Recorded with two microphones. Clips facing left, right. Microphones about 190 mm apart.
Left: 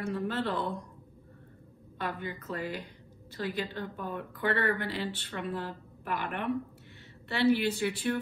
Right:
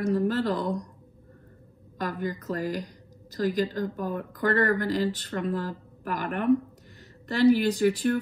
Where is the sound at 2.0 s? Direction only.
40° right (ahead or behind).